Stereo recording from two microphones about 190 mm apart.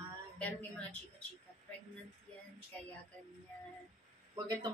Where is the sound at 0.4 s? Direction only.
10° left (ahead or behind).